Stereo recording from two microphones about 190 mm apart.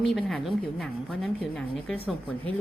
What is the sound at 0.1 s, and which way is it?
A woman's voice, centre (ahead or behind).